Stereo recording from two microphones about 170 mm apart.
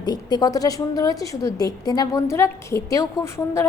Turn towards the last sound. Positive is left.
turn(degrees=15)  # may be behind; listen again after turning